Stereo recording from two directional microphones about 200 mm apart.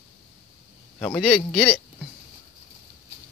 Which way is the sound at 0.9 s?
5° left (ahead or behind).